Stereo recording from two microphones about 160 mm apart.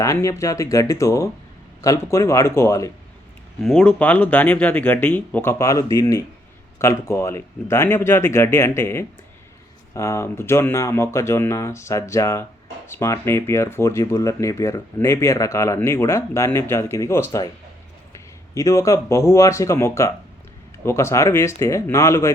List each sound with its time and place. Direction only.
0.0 s speech: 20° left (ahead or behind)
3.6 s speech: 5° left (ahead or behind)
18.5 s speech: 20° left (ahead or behind)